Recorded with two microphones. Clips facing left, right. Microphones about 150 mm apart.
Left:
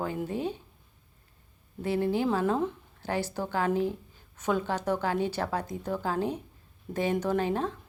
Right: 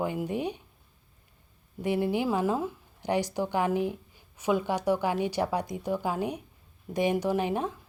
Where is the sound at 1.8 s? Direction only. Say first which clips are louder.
Even; 15° right (ahead or behind).